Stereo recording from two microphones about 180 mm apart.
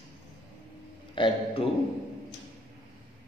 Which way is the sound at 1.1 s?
30° left (ahead or behind).